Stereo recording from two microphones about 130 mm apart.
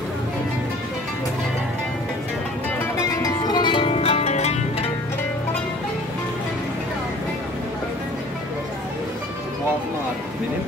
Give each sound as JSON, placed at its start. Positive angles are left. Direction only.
{"t": 3.2, "sound": "zither", "side_deg": 30}